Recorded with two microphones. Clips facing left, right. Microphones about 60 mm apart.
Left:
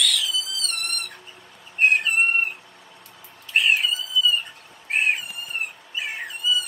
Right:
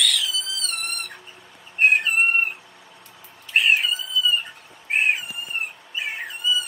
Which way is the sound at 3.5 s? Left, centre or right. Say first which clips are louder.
Right 1 dB; centre.